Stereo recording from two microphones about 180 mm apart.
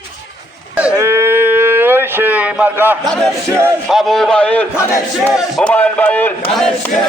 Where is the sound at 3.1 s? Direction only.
Centre (ahead or behind).